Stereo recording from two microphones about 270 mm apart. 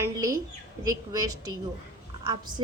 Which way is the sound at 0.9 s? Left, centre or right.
Centre.